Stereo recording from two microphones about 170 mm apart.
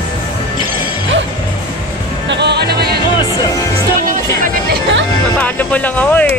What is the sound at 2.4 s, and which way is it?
Music, 75° right (ahead or behind).